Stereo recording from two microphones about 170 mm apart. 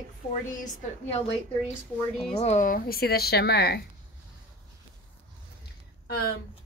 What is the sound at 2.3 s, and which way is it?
Speech, 40° left (ahead or behind).